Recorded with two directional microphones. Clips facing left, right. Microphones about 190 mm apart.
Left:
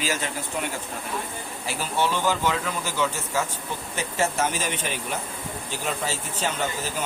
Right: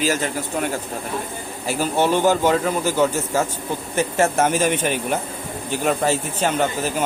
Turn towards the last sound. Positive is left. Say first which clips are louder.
# right 8 dB
turn(degrees=-55)  # may be behind; listen again after turning